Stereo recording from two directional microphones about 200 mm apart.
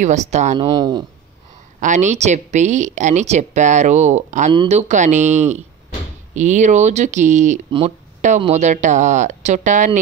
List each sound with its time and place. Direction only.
0.0 s speech: 35° right (ahead or behind)
0.7 s a man's voice: 20° right (ahead or behind)
1.8 s speech: 35° right (ahead or behind)
7.7 s a sound: 35° right (ahead or behind)
8.4 s speech: 35° right (ahead or behind)